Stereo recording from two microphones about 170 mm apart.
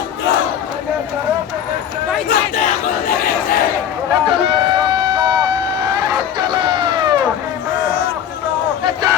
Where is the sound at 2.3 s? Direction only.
45° left (ahead or behind).